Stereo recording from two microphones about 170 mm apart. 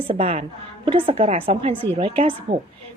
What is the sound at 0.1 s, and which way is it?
A woman's voice, 35° right (ahead or behind).